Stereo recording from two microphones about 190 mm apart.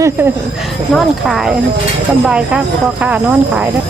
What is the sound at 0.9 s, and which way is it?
A woman's voice, centre (ahead or behind).